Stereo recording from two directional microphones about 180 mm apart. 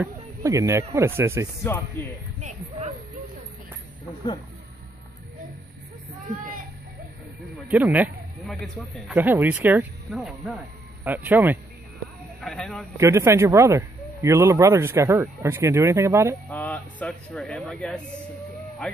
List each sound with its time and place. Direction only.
0.0 s speech: 15° right (ahead or behind)
7.6 s speech: 10° right (ahead or behind)
12.4 s speech: 5° left (ahead or behind)
12.9 s speech: 15° right (ahead or behind)
16.4 s speech: 10° left (ahead or behind)